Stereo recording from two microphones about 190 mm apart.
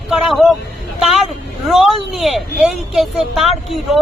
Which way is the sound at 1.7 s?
5° right (ahead or behind).